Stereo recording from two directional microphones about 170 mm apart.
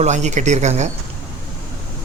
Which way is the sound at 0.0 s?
40° right (ahead or behind).